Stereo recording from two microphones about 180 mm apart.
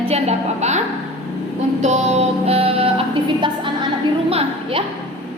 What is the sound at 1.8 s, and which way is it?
Music, 40° right (ahead or behind).